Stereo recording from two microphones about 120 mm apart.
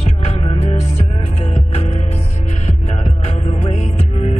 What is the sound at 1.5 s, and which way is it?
Music, 65° left (ahead or behind).